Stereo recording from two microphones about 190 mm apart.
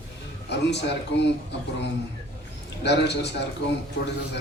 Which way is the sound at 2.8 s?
60° left (ahead or behind).